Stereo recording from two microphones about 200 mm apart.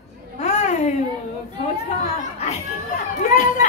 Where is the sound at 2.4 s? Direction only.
35° left (ahead or behind).